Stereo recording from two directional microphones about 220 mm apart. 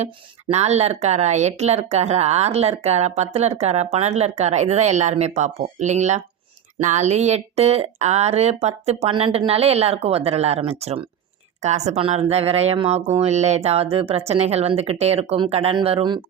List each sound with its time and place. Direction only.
0.0 s speech: 30° right (ahead or behind)